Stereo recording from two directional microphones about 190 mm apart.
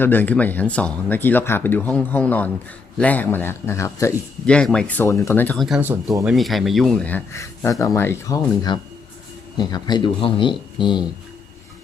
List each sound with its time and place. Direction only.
0.0 s speech: 10° left (ahead or behind); by 6.2 s 15° right (ahead or behind)
6.2 s speech: centre (ahead or behind); by 11.0 s 25° left (ahead or behind)